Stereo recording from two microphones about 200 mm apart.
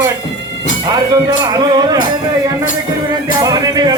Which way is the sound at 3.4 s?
20° right (ahead or behind).